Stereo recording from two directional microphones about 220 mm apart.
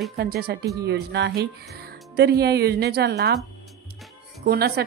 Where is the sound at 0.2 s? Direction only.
45° right (ahead or behind).